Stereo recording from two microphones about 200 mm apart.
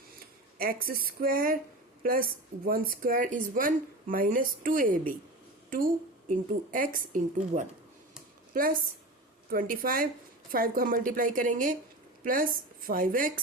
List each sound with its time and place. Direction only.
0.6 s speech: 45° right (ahead or behind)